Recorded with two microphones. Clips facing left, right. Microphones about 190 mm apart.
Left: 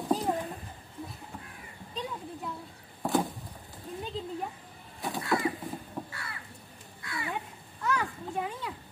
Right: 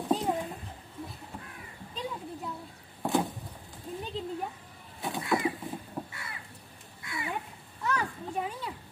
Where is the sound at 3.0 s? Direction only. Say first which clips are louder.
Even; centre (ahead or behind).